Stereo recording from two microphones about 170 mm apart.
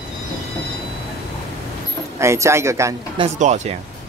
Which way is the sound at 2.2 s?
15° right (ahead or behind).